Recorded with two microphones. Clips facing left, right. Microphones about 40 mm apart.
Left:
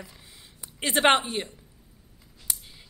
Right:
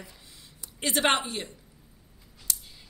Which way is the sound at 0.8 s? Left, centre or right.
Left.